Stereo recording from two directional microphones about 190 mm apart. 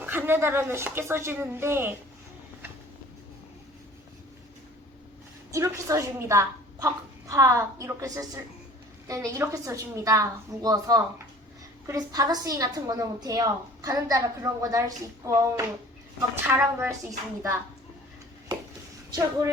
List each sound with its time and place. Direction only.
0.0 s speech: 10° right (ahead or behind)
5.5 s a woman's voice: 15° right (ahead or behind)